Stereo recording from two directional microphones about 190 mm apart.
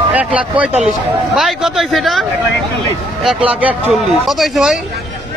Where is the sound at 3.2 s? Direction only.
10° right (ahead or behind).